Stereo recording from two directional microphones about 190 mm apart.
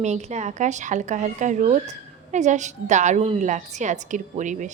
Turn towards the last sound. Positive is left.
turn(degrees=-40)  # may be behind; listen again after turning